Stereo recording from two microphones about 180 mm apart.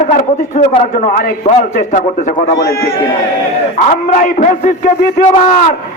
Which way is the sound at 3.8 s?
45° left (ahead or behind).